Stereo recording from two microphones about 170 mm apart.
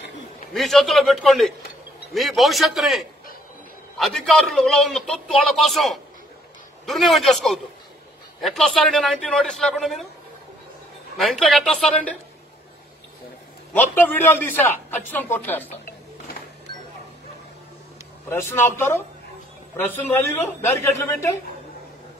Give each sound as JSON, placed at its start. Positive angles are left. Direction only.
{"t": 0.5, "sound": "a man's voice", "side_deg": 0}
{"t": 11.1, "sound": "a man's voice", "side_deg": 0}
{"t": 13.7, "sound": "a man's voice", "side_deg": 10}
{"t": 18.3, "sound": "a man's voice", "side_deg": 15}